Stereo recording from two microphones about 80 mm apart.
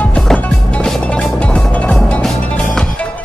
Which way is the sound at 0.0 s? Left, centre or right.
Centre.